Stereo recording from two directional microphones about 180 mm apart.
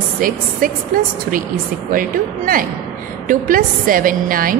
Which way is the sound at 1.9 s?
50° right (ahead or behind).